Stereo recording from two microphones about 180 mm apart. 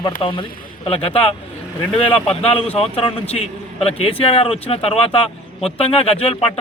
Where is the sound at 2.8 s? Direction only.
30° left (ahead or behind).